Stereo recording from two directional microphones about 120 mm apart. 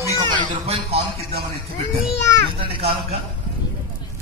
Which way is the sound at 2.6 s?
55° right (ahead or behind).